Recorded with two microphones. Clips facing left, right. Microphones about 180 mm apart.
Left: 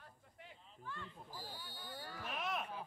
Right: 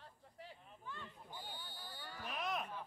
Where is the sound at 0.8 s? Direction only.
20° right (ahead or behind).